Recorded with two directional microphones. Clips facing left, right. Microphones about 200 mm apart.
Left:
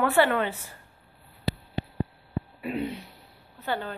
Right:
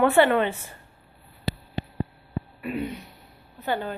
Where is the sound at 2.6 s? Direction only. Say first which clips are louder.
Right 1 dB; 30° left (ahead or behind).